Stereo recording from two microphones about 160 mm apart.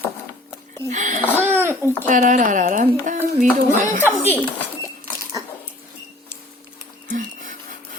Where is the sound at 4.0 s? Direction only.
15° left (ahead or behind).